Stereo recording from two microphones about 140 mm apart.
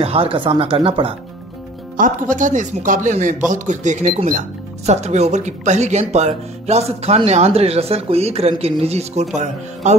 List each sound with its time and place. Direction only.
0.0 s speech: 45° right (ahead or behind)
2.0 s speech: 70° right (ahead or behind); by 9.9 s 55° right (ahead or behind)